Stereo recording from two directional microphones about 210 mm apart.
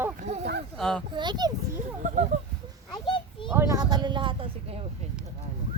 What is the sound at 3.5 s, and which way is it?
Speech, 15° right (ahead or behind).